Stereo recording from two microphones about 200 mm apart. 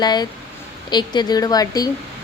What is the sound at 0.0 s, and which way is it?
A woman's voice, 20° left (ahead or behind).